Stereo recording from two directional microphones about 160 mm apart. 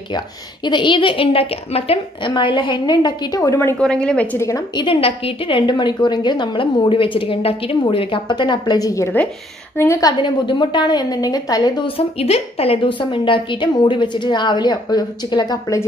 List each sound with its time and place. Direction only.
0.7 s a woman's voice: 30° left (ahead or behind)